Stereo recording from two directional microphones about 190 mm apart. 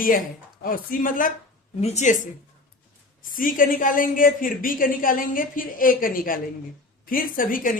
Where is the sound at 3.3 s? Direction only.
45° left (ahead or behind).